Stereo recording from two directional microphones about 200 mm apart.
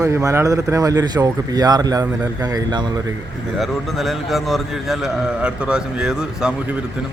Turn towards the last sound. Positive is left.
turn(degrees=-5)  # may be behind; listen again after turning